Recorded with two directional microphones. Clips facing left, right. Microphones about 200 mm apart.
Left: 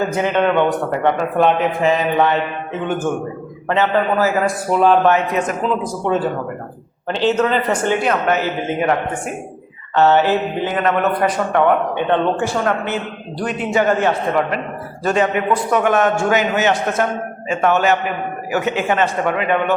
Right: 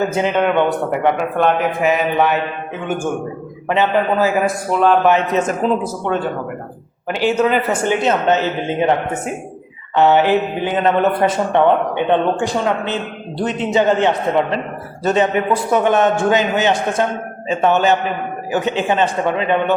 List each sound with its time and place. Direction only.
0.2 s a man's voice: 10° right (ahead or behind)
1.9 s a man's voice: 10° right (ahead or behind)
3.7 s a man's voice: 15° right (ahead or behind)
4.4 s a man's voice: centre (ahead or behind)
5.0 s speech: 25° right (ahead or behind)
6.1 s a man's voice: 5° left (ahead or behind)
7.1 s a man's voice: 10° right (ahead or behind)